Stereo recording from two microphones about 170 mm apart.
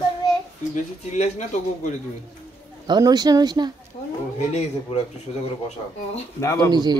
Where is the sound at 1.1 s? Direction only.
45° left (ahead or behind).